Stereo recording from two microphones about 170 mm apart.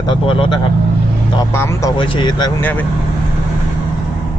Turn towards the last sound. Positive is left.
turn(degrees=10)  # may be behind; listen again after turning